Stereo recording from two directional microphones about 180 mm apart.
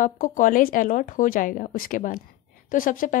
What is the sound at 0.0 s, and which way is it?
A woman's voice, 50° left (ahead or behind).